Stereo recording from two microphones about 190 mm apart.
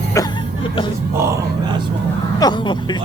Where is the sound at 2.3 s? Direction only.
20° left (ahead or behind).